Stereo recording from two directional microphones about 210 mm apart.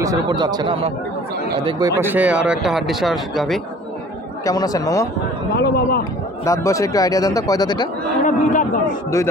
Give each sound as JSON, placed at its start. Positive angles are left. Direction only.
{"t": 0.0, "sound": "speech", "side_deg": -20}
{"t": 4.5, "sound": "a man's voice", "side_deg": 15}
{"t": 5.6, "sound": "a man's voice", "side_deg": 50}
{"t": 6.4, "sound": "a man's voice", "side_deg": 15}
{"t": 8.2, "sound": "speech", "side_deg": 35}